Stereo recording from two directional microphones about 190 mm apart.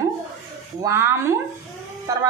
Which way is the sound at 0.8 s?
15° right (ahead or behind).